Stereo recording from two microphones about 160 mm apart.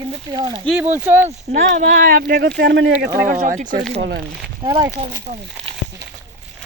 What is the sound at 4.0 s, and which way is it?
Speech, 90° right.